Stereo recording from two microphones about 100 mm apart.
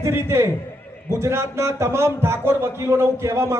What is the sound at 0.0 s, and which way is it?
A man's voice, 25° right (ahead or behind).